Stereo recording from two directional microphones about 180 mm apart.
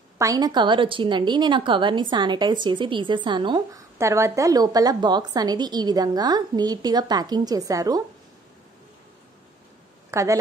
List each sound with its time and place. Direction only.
0.2 s a woman's voice: 20° right (ahead or behind)
10.1 s a woman's voice: 15° right (ahead or behind)